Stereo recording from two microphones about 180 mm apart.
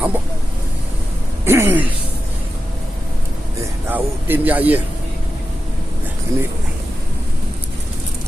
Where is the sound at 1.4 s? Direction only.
15° right (ahead or behind).